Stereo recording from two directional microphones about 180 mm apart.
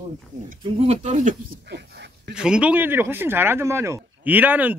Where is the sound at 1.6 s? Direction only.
70° right (ahead or behind).